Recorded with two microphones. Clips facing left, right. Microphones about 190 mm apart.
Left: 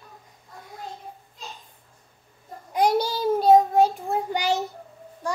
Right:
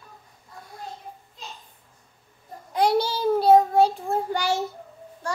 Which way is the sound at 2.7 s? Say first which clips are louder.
Even; 15° left (ahead or behind).